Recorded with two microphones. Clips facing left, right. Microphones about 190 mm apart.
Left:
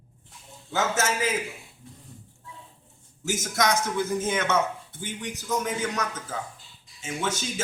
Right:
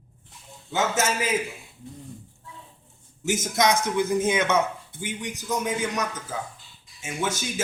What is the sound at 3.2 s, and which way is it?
Speech, 20° right (ahead or behind).